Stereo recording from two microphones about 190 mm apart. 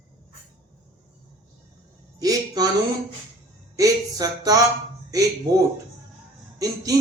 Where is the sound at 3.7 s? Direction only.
20° right (ahead or behind).